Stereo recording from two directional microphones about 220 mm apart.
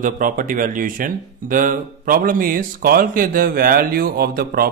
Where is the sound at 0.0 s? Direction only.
40° right (ahead or behind).